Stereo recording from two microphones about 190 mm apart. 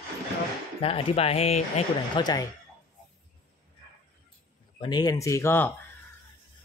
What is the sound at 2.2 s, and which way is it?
Speech, 20° left (ahead or behind).